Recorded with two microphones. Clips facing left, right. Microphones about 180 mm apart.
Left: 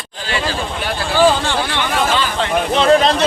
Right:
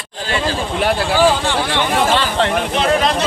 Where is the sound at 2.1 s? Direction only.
70° right (ahead or behind).